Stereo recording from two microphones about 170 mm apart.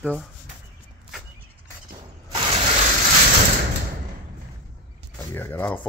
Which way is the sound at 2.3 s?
35° right (ahead or behind).